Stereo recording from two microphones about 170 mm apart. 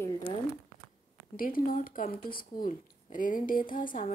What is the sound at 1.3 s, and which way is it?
A woman's voice, 55° left (ahead or behind).